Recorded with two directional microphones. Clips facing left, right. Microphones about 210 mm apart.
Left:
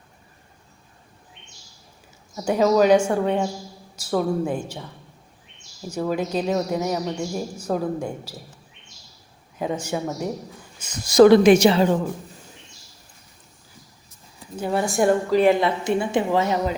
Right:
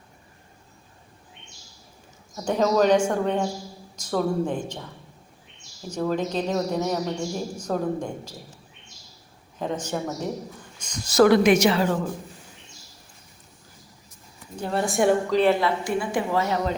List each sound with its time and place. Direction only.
2.3 s speech: 5° left (ahead or behind)
5.9 s speech: 10° left (ahead or behind)
9.6 s speech: 10° left (ahead or behind)
11.2 s speech: 30° left (ahead or behind)
14.5 s a woman's voice: 5° left (ahead or behind)
15.4 s speech: 15° left (ahead or behind)